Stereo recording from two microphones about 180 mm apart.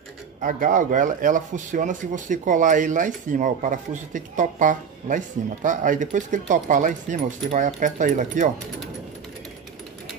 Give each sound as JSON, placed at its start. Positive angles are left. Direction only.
{"t": 0.4, "sound": "speech", "side_deg": -50}